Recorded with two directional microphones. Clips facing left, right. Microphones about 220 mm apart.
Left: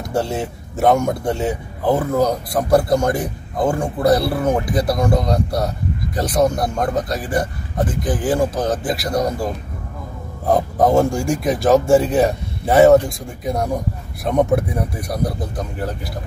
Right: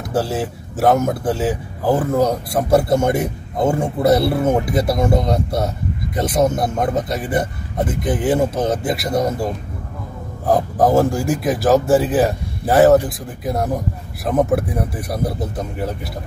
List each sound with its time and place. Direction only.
0.1 s a man's voice: 5° right (ahead or behind)
2.9 s speech: 25° right (ahead or behind)
6.8 s a man's voice: 5° right (ahead or behind)
7.2 s speech: 20° right (ahead or behind)
10.4 s a man's voice: centre (ahead or behind)